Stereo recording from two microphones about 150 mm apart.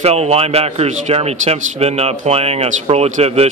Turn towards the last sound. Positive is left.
turn(degrees=-45)  # may be behind; listen again after turning